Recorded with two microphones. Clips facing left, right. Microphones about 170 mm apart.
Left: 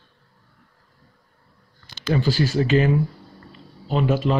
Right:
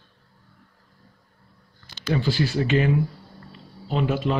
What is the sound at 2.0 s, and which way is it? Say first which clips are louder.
Speech: left 2 dB; 40° left (ahead or behind).